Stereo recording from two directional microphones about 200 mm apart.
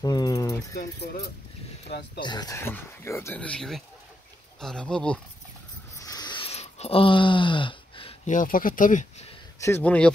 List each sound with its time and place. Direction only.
0.0 s dog: 20° left (ahead or behind)
2.1 s speech: 20° left (ahead or behind); by 5.2 s 5° left (ahead or behind)
5.9 s a sound: 20° left (ahead or behind)
8.3 s speech: 40° left (ahead or behind)
9.6 s speech: 10° left (ahead or behind)